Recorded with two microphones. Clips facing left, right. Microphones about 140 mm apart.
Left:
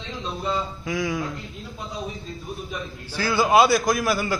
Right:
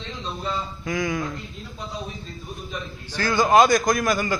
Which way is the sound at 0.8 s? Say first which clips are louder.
Right 2 dB; 5° left (ahead or behind).